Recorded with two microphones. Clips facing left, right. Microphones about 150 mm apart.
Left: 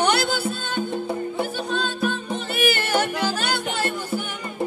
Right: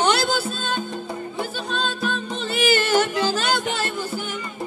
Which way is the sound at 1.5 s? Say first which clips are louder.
Left 1 dB; 15° left (ahead or behind).